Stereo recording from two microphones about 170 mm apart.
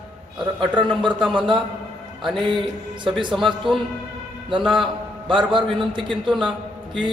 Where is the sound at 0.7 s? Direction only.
30° right (ahead or behind).